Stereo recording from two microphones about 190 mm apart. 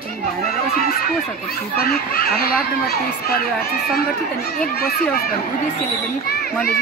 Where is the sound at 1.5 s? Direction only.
50° left (ahead or behind).